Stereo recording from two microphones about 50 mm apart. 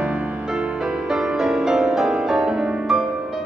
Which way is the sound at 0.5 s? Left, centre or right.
Centre.